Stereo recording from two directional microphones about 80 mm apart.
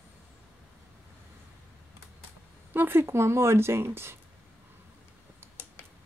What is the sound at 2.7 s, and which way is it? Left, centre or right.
Speech, right.